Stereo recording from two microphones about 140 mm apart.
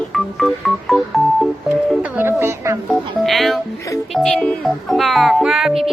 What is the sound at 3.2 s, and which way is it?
Speech, centre (ahead or behind).